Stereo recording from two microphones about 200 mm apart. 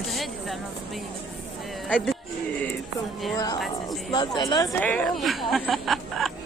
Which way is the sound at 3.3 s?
20° left (ahead or behind).